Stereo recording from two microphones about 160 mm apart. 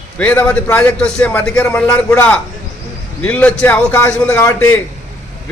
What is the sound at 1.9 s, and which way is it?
Speech, 20° left (ahead or behind).